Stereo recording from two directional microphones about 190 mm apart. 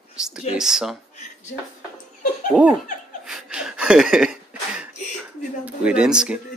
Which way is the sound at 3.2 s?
5° right (ahead or behind).